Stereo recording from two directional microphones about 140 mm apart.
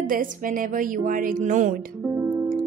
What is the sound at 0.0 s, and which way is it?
A woman's voice, 80° right.